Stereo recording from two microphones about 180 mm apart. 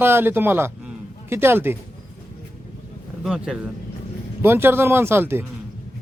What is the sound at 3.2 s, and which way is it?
A man's voice, 5° right (ahead or behind).